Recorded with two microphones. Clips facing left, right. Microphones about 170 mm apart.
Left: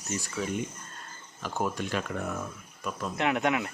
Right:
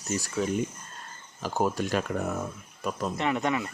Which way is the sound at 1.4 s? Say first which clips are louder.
Right 4 dB; 35° right (ahead or behind).